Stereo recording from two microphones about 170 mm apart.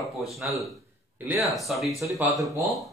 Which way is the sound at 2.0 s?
15° right (ahead or behind).